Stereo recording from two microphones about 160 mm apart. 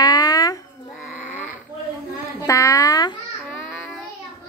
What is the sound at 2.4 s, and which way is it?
Speech, 20° left (ahead or behind).